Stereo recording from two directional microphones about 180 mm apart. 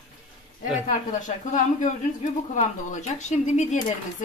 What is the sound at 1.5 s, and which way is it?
Speech, 45° left (ahead or behind).